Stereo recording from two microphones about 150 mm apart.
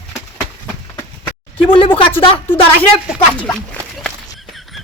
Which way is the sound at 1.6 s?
35° left (ahead or behind).